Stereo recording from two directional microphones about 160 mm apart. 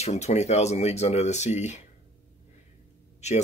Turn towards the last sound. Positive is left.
turn(degrees=45)  # may be behind; listen again after turning